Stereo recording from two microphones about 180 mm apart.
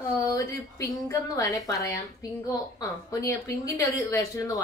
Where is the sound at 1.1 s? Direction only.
15° left (ahead or behind).